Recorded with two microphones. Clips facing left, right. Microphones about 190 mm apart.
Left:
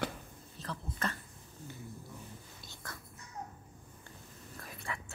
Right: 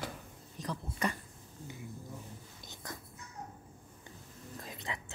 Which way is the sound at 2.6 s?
20° right (ahead or behind).